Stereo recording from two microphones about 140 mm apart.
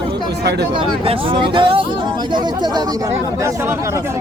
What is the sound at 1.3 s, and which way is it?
Speech, 35° right (ahead or behind).